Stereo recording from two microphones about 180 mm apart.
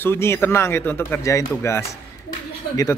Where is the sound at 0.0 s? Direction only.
15° left (ahead or behind).